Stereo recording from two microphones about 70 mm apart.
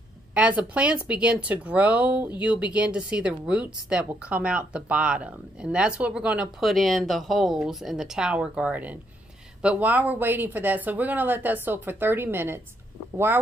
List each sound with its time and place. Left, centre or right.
0.3 s speech: centre
6.6 s speech: centre; by 12.6 s right